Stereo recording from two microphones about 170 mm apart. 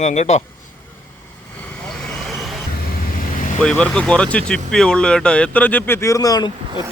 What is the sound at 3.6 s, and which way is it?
Speech, 5° left (ahead or behind).